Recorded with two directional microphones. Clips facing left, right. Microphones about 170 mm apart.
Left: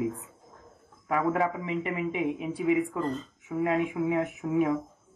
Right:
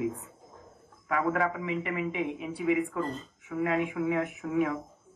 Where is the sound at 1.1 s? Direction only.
25° left (ahead or behind).